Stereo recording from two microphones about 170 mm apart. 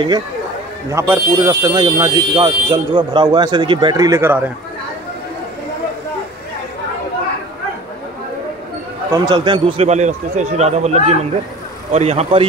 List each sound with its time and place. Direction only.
0.9 s speech: 15° right (ahead or behind)
9.1 s a man's voice: 25° right (ahead or behind); by 12.4 s 40° right (ahead or behind)